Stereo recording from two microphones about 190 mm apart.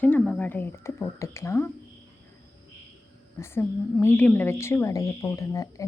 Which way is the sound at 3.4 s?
15° left (ahead or behind).